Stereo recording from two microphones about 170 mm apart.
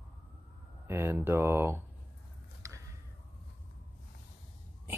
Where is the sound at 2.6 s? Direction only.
20° right (ahead or behind).